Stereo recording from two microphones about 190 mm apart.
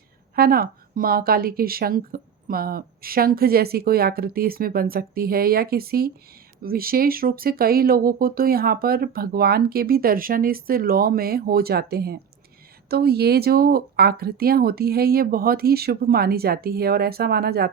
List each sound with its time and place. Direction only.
0.3 s speech: 50° right (ahead or behind)